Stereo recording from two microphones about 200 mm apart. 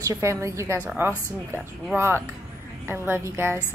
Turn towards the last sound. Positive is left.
turn(degrees=-10)  # may be behind; listen again after turning